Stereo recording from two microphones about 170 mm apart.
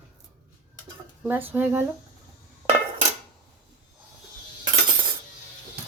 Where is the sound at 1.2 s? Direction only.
10° right (ahead or behind).